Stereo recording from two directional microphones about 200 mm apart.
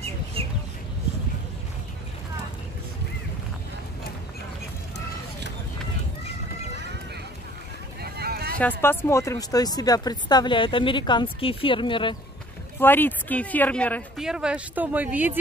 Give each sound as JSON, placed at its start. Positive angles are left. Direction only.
{"t": 8.0, "sound": "boat", "side_deg": -50}
{"t": 8.5, "sound": "speech", "side_deg": 10}
{"t": 12.8, "sound": "speech", "side_deg": 10}